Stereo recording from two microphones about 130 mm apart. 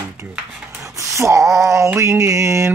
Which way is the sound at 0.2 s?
20° right (ahead or behind).